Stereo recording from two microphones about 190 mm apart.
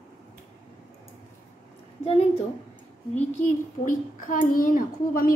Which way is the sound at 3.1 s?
40° left (ahead or behind).